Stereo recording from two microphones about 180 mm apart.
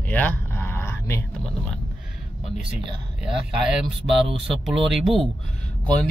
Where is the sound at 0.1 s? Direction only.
10° left (ahead or behind).